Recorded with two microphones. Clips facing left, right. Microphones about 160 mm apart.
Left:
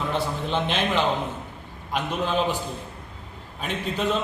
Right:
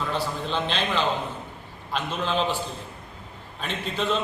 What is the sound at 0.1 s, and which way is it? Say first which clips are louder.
A man's voice: left 2 dB; 20° left (ahead or behind).